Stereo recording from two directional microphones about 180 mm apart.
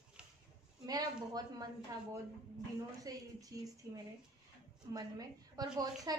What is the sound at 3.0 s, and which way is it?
A woman's voice, 20° right (ahead or behind).